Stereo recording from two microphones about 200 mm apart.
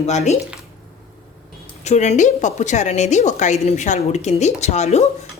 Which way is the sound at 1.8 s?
35° left (ahead or behind).